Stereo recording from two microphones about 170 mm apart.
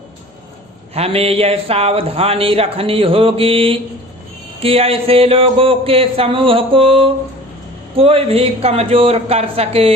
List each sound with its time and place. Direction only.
0.9 s a man's voice: 35° right (ahead or behind)